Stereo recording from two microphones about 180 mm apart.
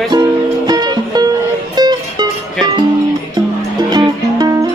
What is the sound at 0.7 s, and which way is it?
Music, 25° right (ahead or behind).